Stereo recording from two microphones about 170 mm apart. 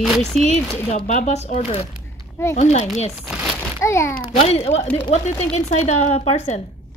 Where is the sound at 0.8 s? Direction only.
45° left (ahead or behind).